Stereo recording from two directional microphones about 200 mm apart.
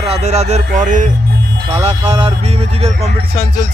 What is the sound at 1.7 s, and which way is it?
Speech, 25° right (ahead or behind).